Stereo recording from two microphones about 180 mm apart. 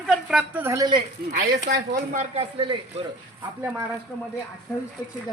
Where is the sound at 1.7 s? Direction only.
55° right (ahead or behind).